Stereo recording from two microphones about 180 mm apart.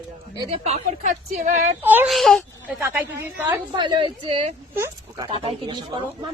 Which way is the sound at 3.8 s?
30° right (ahead or behind).